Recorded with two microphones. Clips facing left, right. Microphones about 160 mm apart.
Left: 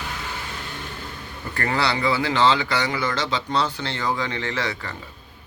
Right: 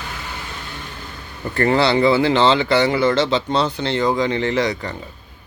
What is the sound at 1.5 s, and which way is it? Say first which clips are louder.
Speech: right 8 dB; 25° right (ahead or behind).